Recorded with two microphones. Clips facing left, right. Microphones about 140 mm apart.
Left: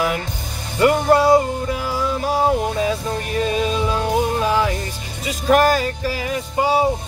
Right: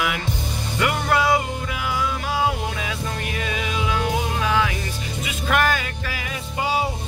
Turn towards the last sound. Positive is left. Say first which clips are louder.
# left 6 dB
turn(degrees=40)  # may be behind; listen again after turning